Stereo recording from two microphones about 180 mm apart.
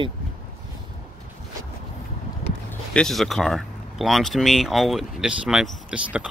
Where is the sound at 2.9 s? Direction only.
Centre (ahead or behind).